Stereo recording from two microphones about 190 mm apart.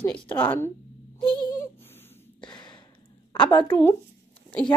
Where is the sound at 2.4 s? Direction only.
25° left (ahead or behind).